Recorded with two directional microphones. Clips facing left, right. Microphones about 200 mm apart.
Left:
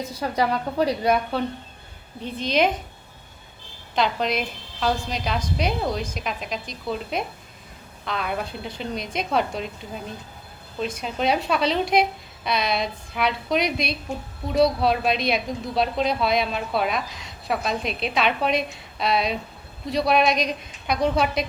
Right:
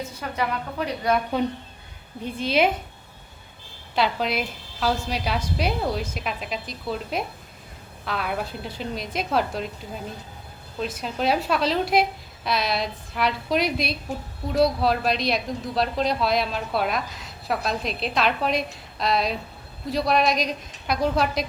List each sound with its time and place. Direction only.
0.0 s a woman's voice: 35° left (ahead or behind)
1.3 s a woman's voice: 15° right (ahead or behind)
3.9 s a woman's voice: 5° right (ahead or behind)